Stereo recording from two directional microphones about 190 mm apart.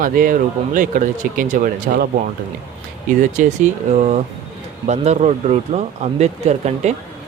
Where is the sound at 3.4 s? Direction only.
40° right (ahead or behind).